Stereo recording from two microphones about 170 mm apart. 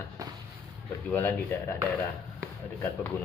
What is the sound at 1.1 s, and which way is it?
Speech, 10° left (ahead or behind).